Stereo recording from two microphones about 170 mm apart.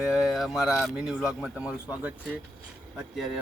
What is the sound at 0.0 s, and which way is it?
Speech, 5° right (ahead or behind).